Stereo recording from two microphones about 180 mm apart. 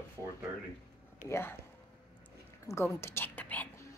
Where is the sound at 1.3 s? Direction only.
15° left (ahead or behind).